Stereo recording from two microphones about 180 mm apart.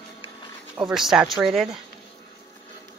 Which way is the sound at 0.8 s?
5° right (ahead or behind).